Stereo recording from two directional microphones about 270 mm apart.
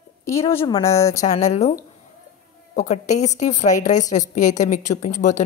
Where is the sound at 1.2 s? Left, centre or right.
Left.